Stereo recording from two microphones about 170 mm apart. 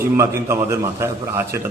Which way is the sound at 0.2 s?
15° right (ahead or behind).